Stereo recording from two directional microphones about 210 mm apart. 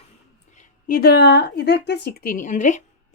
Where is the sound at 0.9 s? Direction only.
45° left (ahead or behind).